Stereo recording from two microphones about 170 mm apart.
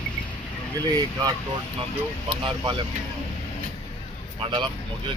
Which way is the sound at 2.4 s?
30° right (ahead or behind).